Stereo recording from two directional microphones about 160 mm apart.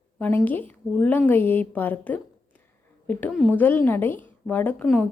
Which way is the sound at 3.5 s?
10° left (ahead or behind).